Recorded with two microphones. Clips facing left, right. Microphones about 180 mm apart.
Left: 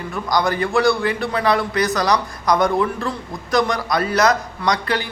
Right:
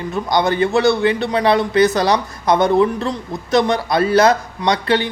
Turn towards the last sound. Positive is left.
turn(degrees=-25)  # may be behind; listen again after turning